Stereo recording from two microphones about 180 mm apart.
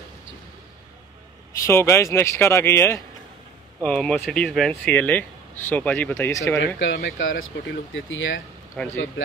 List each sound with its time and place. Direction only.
1.7 s speech: 15° left (ahead or behind)
6.8 s speech: 80° left
8.8 s speech: 5° left (ahead or behind)